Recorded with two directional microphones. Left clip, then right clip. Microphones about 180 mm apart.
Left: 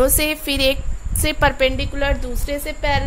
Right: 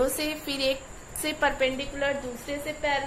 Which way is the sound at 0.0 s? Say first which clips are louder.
Left 9 dB; 50° left (ahead or behind).